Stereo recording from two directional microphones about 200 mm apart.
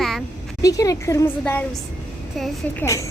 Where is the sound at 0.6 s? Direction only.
15° left (ahead or behind); by 2.8 s centre (ahead or behind).